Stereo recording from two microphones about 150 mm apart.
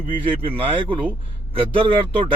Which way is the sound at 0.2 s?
35° right (ahead or behind).